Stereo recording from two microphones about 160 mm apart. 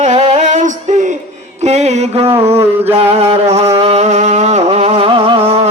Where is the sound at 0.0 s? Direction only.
45° right (ahead or behind).